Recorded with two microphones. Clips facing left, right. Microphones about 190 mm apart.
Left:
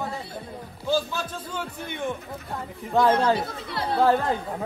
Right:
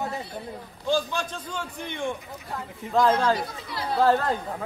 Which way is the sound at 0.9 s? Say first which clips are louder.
Even; 5° left (ahead or behind).